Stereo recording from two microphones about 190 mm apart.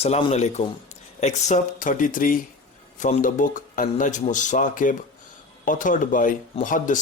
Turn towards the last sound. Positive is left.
turn(degrees=45)  # may be behind; listen again after turning